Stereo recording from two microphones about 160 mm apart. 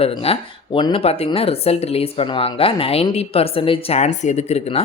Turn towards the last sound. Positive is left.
turn(degrees=45)  # may be behind; listen again after turning